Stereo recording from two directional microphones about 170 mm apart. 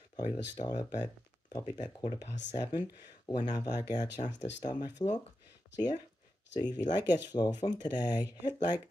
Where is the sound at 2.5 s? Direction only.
25° left (ahead or behind).